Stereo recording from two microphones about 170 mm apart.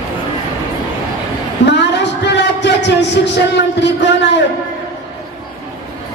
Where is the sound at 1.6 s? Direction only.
90° left.